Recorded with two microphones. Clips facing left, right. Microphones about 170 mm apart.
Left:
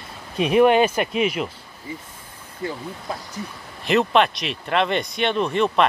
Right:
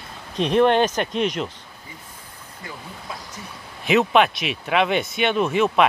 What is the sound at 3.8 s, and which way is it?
Speech, centre (ahead or behind).